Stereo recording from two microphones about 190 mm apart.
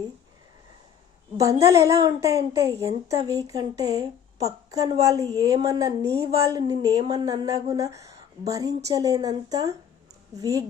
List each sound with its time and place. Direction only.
1.4 s a woman's voice: 15° right (ahead or behind)